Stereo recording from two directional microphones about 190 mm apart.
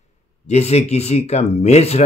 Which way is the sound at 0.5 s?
35° left (ahead or behind).